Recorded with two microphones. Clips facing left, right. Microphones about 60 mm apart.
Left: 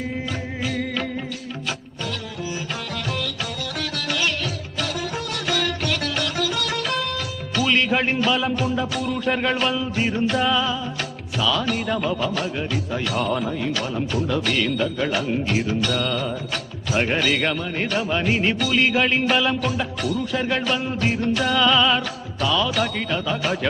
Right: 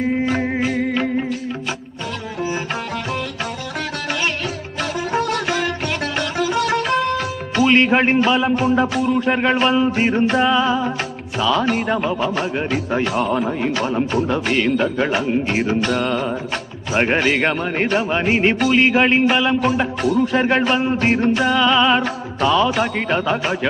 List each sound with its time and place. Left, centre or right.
0.2 s music: right
0.7 s music: right
5.1 s music: right
5.9 s music: right
9.0 s speech: centre
9.8 s a man's voice: right
13.1 s speech: centre
13.5 s a man's voice: right
19.2 s speech: centre
19.6 s a man's voice: right
21.4 s speech: right
23.4 s speech: centre